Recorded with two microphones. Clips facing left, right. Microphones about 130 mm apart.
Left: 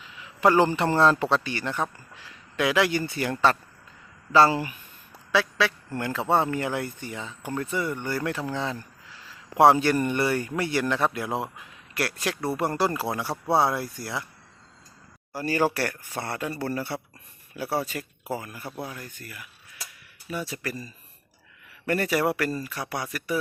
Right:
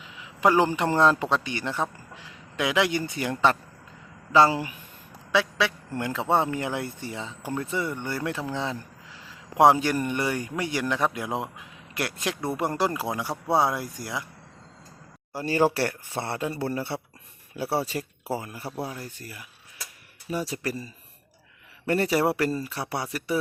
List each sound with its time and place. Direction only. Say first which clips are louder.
0.0 s a man's voice: left 1 dB; 15° right (ahead or behind)
15.3 s speech: right 2 dB; 25° right (ahead or behind)
15.9 s speech: right 1 dB; 10° right (ahead or behind)
16.4 s speech: even; 25° right (ahead or behind)